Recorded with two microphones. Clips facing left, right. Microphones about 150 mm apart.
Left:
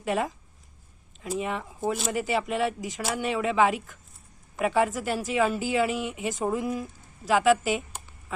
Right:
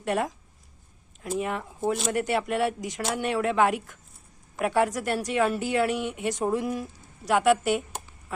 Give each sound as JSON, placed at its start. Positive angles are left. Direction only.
{"t": 0.0, "sound": "speech", "side_deg": 0}